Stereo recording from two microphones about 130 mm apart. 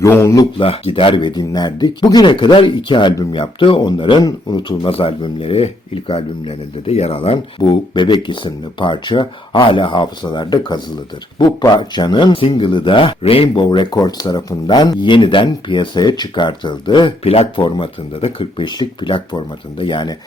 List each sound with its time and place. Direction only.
0.0 s speech: 20° left (ahead or behind)
0.5 s speech: 45° left (ahead or behind)
4.9 s speech: 45° left (ahead or behind)
7.6 s speech: 35° left (ahead or behind); by 13.5 s 50° left (ahead or behind)
13.5 s speech: 35° left (ahead or behind)
17.2 s speech: 50° left (ahead or behind)